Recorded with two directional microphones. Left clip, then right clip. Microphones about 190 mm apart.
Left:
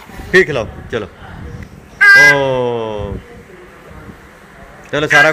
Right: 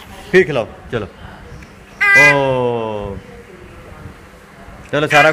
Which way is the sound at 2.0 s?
15° left (ahead or behind).